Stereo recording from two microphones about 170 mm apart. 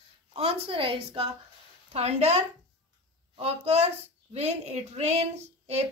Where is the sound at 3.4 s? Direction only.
35° right (ahead or behind).